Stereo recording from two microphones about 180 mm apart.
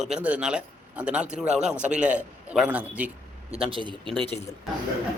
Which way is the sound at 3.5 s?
30° right (ahead or behind).